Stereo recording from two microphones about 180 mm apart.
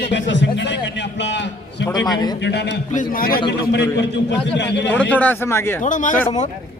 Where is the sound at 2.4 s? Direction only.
70° left (ahead or behind).